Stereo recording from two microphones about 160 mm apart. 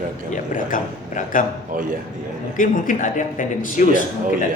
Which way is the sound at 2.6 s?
55° left (ahead or behind).